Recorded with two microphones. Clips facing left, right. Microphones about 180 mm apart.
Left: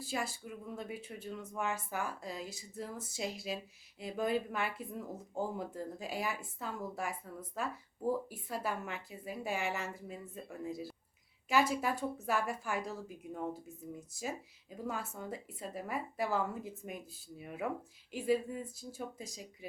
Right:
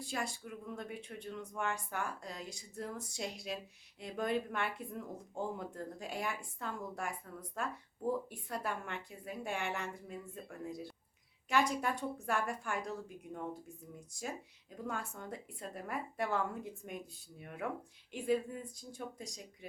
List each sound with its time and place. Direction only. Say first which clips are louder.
0.0 s speech: left 1 dB; 5° left (ahead or behind)